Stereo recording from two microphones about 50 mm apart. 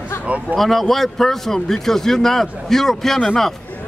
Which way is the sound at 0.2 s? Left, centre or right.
Right.